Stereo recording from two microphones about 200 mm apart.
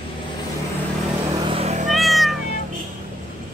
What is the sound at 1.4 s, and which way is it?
Vehicle, 30° right (ahead or behind).